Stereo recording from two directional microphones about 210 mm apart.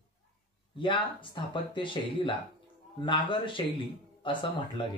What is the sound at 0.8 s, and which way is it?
Speech, 25° left (ahead or behind).